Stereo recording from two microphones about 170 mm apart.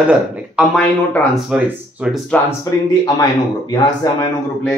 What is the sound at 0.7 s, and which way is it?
Speech, 5° left (ahead or behind).